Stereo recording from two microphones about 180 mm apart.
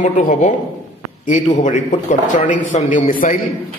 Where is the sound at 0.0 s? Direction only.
45° left (ahead or behind).